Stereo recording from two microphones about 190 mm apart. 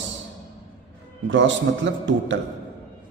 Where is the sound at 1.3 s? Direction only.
75° right (ahead or behind).